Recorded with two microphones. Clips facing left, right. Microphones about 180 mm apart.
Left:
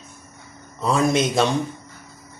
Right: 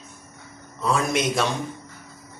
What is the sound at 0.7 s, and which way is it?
Speech, 30° left (ahead or behind).